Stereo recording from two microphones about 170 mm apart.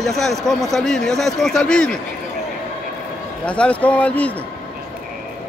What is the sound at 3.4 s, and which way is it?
Speech, 5° left (ahead or behind).